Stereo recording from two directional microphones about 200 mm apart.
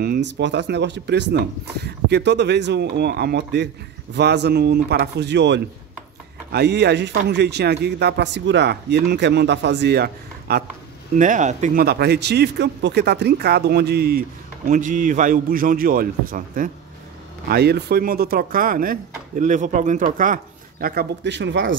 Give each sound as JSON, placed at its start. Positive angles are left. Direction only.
{"t": 0.0, "sound": "speech", "side_deg": -55}
{"t": 11.1, "sound": "speech", "side_deg": -40}
{"t": 11.8, "sound": "speech", "side_deg": -55}
{"t": 14.7, "sound": "speech", "side_deg": -40}
{"t": 17.5, "sound": "speech", "side_deg": -55}